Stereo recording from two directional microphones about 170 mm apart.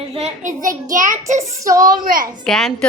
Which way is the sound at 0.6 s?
50° right (ahead or behind).